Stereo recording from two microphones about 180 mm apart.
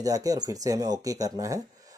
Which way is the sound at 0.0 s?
20° right (ahead or behind).